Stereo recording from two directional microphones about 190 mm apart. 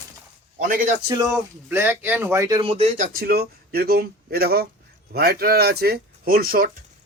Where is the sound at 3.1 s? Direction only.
55° right (ahead or behind).